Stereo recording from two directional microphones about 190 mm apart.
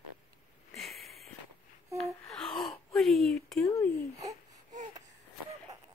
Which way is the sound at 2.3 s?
Centre (ahead or behind).